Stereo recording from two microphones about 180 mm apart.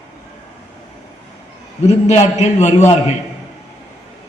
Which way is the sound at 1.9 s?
40° left (ahead or behind).